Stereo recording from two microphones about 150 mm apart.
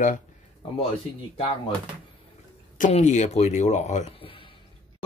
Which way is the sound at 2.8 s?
50° left (ahead or behind).